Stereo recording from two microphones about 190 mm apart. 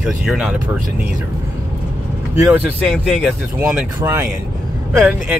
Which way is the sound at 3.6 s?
15° right (ahead or behind).